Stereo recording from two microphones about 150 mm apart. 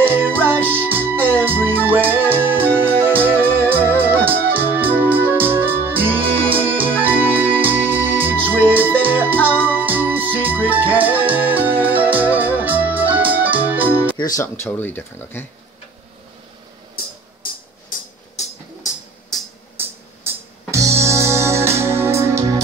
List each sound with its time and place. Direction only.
0.1 s music: 15° right (ahead or behind)
4.5 s organ: 15° right (ahead or behind)
5.0 s music: 15° right (ahead or behind)
6.5 s organ: 35° right (ahead or behind)
7.0 s organ: 10° right (ahead or behind)
8.7 s music: 10° right (ahead or behind)
14.1 s speech: 25° left (ahead or behind)
20.7 s music: 20° right (ahead or behind)